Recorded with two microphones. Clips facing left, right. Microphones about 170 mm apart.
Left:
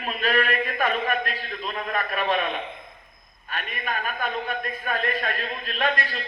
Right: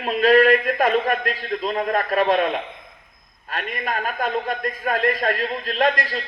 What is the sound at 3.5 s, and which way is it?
A man's voice, 35° right (ahead or behind).